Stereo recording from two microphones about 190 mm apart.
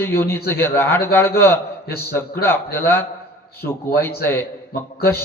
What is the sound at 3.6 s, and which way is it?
Speech, 55° left (ahead or behind).